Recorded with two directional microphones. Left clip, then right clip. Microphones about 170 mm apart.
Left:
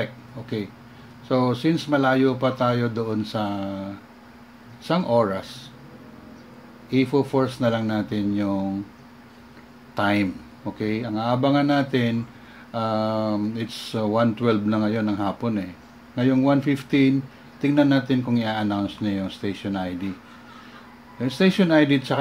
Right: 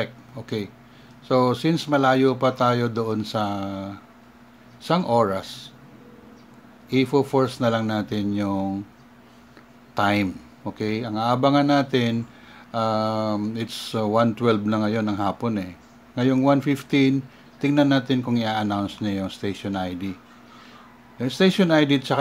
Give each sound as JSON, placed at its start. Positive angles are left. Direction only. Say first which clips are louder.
{"t": 0.0, "sound": "a sound", "louder": "even", "side_deg": -25}
{"t": 1.2, "sound": "speech", "louder": "right 2 dB", "side_deg": -25}
{"t": 6.9, "sound": "speech", "louder": "right 1 dB", "side_deg": -25}
{"t": 9.9, "sound": "speech", "louder": "right 1 dB", "side_deg": -25}
{"t": 21.2, "sound": "speech", "louder": "right 1 dB", "side_deg": -25}